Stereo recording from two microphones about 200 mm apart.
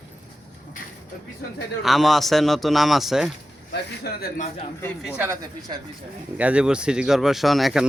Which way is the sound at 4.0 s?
50° left (ahead or behind).